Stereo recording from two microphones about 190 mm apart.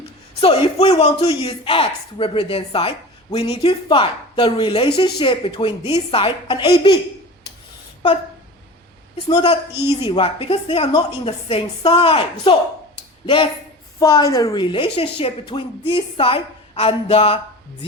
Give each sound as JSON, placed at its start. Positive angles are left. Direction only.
{"t": 0.3, "sound": "a woman's voice", "side_deg": 30}
{"t": 9.3, "sound": "a woman's voice", "side_deg": 30}
{"t": 9.7, "sound": "a woman's voice", "side_deg": -10}
{"t": 10.1, "sound": "a woman's voice", "side_deg": 30}